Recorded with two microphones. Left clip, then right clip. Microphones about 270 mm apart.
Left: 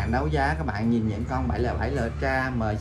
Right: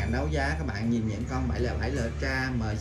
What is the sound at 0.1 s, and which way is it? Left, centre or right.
Speech, centre.